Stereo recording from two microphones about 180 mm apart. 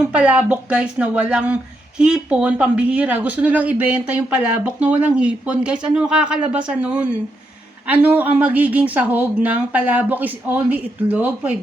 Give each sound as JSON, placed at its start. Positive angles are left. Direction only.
{"t": 0.1, "sound": "speech", "side_deg": -5}